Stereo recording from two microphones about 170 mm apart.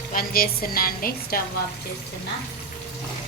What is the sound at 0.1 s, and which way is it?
A woman's voice, 60° left (ahead or behind).